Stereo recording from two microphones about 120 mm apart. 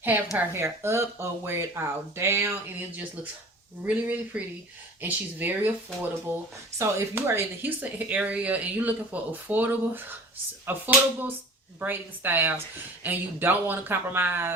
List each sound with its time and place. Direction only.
0.3 s speech: 20° right (ahead or behind)